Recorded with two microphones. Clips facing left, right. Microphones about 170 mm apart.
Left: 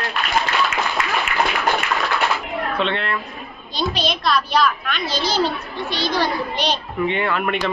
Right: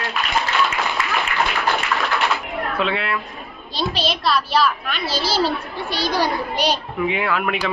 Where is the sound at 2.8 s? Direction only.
5° right (ahead or behind).